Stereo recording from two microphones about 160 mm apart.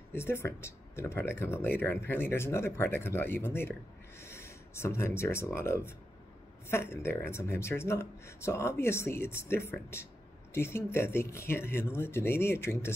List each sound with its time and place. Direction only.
0.1 s speech: 15° left (ahead or behind)